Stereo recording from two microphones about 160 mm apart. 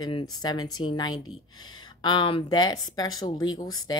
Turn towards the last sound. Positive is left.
turn(degrees=25)  # may be behind; listen again after turning